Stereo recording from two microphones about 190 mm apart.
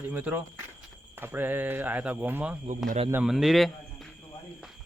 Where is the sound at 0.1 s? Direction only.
10° right (ahead or behind).